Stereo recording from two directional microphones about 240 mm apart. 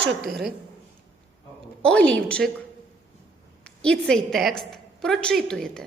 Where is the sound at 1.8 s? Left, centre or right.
Centre.